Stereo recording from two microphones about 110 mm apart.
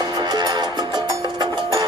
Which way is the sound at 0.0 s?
40° right (ahead or behind).